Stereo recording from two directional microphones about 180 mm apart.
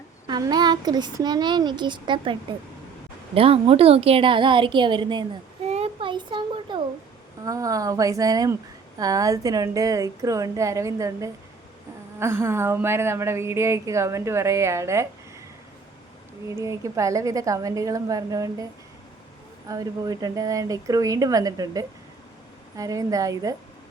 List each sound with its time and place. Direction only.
0.3 s speech: 20° right (ahead or behind)
5.6 s a sound: 35° right (ahead or behind)
7.4 s speech: 20° right (ahead or behind)
16.6 s speech: 15° right (ahead or behind)